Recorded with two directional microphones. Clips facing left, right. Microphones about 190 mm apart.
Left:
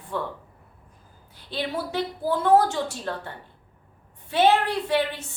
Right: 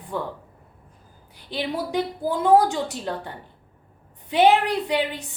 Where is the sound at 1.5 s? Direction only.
15° right (ahead or behind).